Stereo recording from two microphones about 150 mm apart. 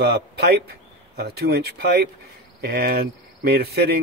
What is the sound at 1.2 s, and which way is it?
Speech, 90° right.